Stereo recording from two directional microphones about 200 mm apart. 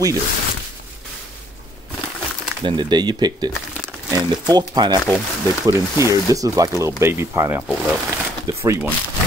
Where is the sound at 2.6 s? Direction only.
20° right (ahead or behind).